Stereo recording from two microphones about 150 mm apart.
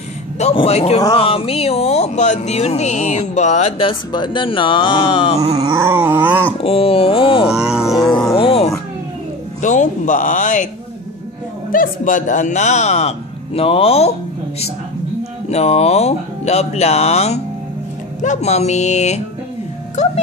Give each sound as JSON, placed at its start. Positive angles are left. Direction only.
{"t": 0.4, "sound": "a man's voice", "side_deg": 45}
{"t": 5.6, "sound": "dog", "side_deg": -20}
{"t": 6.6, "sound": "speech", "side_deg": 40}
{"t": 7.4, "sound": "speech", "side_deg": -5}
{"t": 8.4, "sound": "speech", "side_deg": 40}
{"t": 9.6, "sound": "speech", "side_deg": 55}
{"t": 11.7, "sound": "a man's voice", "side_deg": 65}
{"t": 15.5, "sound": "a man's voice", "side_deg": 45}